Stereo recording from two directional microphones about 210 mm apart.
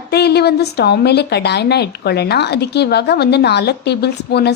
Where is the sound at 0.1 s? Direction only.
50° left (ahead or behind).